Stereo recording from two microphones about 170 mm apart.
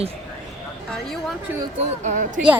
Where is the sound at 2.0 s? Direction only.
45° right (ahead or behind).